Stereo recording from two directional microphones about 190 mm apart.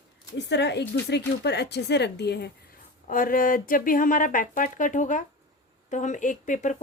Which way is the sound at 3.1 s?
45° left (ahead or behind).